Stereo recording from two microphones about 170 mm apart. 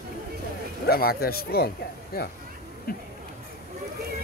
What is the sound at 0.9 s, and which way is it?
Speech, 60° left (ahead or behind).